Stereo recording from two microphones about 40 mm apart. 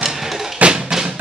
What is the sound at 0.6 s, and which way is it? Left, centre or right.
Music, right.